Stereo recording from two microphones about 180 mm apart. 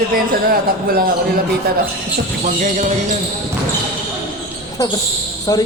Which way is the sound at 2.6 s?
45° right (ahead or behind).